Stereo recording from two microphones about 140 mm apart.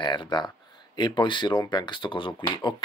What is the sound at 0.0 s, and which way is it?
Speech, 35° left (ahead or behind).